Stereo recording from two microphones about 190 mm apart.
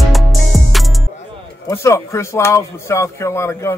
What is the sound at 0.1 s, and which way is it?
Music, centre (ahead or behind).